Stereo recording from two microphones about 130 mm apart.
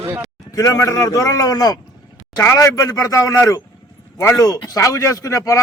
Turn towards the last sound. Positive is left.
turn(degrees=25)  # may be behind; listen again after turning